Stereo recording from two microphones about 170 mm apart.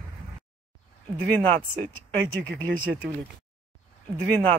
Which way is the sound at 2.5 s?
70° right (ahead or behind).